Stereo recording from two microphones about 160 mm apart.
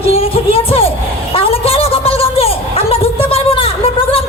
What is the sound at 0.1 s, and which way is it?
Music, 35° left (ahead or behind).